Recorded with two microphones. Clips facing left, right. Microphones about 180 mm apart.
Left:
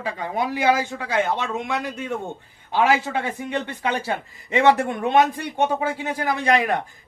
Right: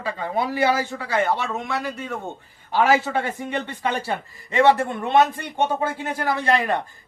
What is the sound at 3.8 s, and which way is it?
A man's voice, 15° left (ahead or behind).